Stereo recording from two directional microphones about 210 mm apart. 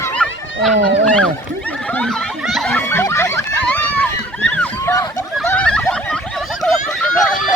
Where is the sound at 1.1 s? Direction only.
5° left (ahead or behind).